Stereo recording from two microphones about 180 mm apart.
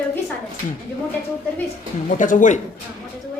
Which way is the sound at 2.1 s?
45° left (ahead or behind).